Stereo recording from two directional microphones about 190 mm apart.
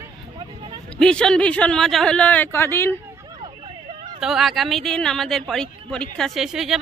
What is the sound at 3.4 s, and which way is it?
Vehicle, 25° right (ahead or behind).